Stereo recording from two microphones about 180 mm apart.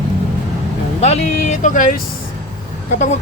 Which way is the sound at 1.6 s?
45° left (ahead or behind).